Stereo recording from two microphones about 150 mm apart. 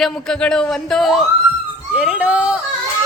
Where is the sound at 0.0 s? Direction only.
5° left (ahead or behind).